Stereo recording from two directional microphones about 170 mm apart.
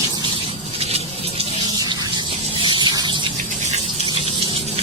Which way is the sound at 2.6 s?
25° right (ahead or behind).